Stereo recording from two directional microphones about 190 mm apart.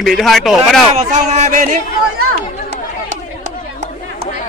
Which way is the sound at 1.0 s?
40° right (ahead or behind).